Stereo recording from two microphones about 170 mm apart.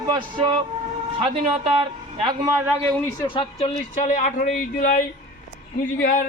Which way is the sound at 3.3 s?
35° left (ahead or behind).